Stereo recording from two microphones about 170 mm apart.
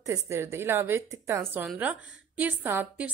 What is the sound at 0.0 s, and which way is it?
A woman's voice, 15° right (ahead or behind).